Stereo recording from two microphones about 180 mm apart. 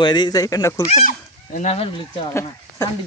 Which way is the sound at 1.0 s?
45° left (ahead or behind).